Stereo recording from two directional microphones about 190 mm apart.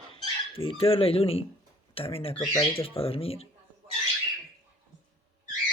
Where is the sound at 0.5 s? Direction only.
30° left (ahead or behind).